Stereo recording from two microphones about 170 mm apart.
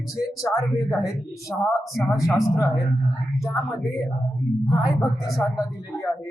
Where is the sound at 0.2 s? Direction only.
20° left (ahead or behind).